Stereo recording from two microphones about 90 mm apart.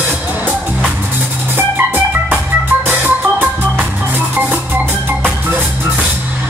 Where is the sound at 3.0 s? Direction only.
20° right (ahead or behind).